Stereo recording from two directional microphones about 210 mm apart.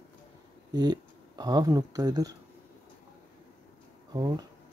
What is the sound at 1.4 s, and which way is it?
Speech, 15° right (ahead or behind).